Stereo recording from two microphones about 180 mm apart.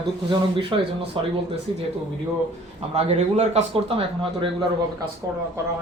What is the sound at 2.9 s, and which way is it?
Speech, 35° right (ahead or behind).